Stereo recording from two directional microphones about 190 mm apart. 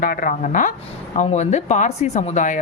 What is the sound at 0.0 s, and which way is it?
Speech, 45° left (ahead or behind).